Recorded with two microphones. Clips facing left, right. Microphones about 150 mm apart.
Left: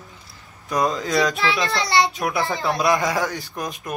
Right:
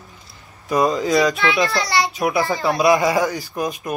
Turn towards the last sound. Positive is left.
turn(degrees=0)  # may be behind; listen again after turning